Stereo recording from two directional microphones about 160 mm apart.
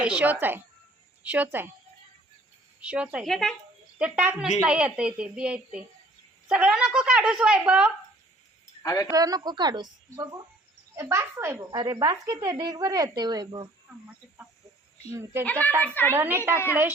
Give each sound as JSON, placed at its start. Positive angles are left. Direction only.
{"t": 0.2, "sound": "a woman's voice", "side_deg": -10}
{"t": 2.8, "sound": "a woman's voice", "side_deg": -5}
{"t": 8.8, "sound": "speech", "side_deg": 20}
{"t": 9.1, "sound": "a woman's voice", "side_deg": -25}
{"t": 15.1, "sound": "a woman's voice", "side_deg": -15}
{"t": 15.4, "sound": "a woman's voice", "side_deg": 10}
{"t": 16.1, "sound": "a woman's voice", "side_deg": -15}